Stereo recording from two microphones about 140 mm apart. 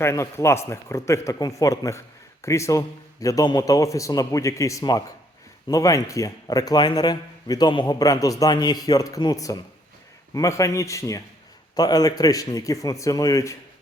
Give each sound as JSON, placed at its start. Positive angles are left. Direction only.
{"t": 0.0, "sound": "a man's voice", "side_deg": 20}